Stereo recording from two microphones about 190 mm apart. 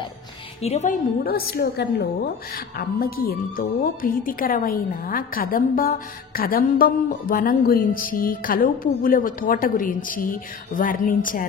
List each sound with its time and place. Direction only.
0.6 s a woman's voice: 35° left (ahead or behind)
1.2 s a woman's voice: 55° left (ahead or behind)